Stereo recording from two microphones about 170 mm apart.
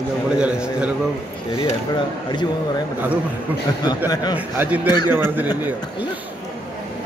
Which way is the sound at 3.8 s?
25° left (ahead or behind).